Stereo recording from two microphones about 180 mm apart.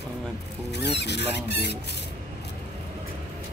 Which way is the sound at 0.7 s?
70° left (ahead or behind).